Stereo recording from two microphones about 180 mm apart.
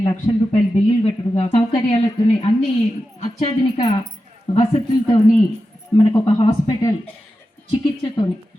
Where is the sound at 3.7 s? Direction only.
25° left (ahead or behind).